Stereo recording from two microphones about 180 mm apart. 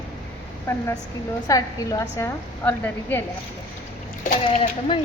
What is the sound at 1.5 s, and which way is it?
A woman's voice, 20° left (ahead or behind).